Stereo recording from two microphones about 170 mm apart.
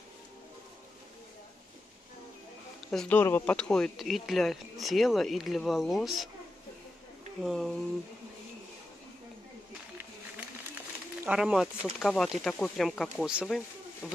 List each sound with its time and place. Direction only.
2.9 s speech: 5° left (ahead or behind)
7.4 s speech: centre (ahead or behind)
11.2 s speech: 5° right (ahead or behind)
14.0 s a sound: centre (ahead or behind)